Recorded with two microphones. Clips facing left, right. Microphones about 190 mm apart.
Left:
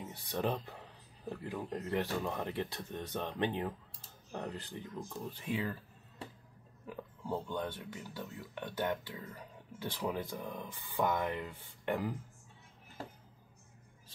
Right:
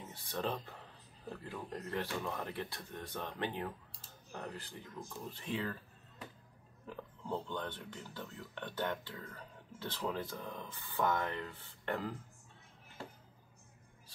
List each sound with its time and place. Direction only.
0.0 s speech: 15° left (ahead or behind)
5.4 s speech: 10° left (ahead or behind)
6.9 s speech: 10° left (ahead or behind)